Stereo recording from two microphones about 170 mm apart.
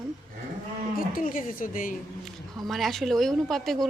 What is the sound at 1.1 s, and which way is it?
Speech, 50° left (ahead or behind).